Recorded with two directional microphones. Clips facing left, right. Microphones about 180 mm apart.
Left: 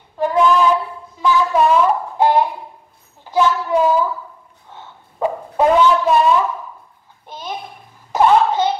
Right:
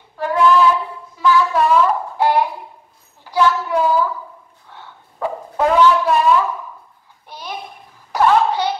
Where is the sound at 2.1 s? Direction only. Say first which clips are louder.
Left 2 dB; 20° left (ahead or behind).